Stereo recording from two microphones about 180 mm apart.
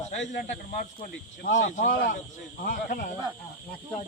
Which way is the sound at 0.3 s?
45° left (ahead or behind).